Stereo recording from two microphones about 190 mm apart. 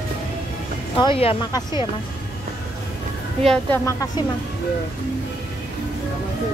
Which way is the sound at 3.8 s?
20° left (ahead or behind).